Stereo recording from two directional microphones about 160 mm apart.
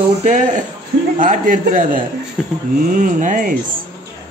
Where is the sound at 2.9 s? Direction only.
55° right (ahead or behind).